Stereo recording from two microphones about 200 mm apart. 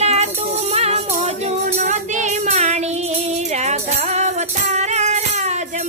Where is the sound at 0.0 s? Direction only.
35° right (ahead or behind).